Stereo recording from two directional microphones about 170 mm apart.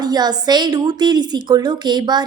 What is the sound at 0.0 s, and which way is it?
A woman's voice, 25° right (ahead or behind).